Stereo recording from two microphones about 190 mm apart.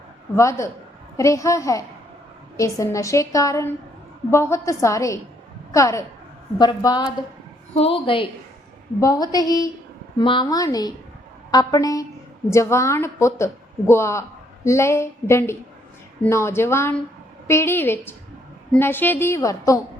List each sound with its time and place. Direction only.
0.3 s a woman's voice: 15° left (ahead or behind)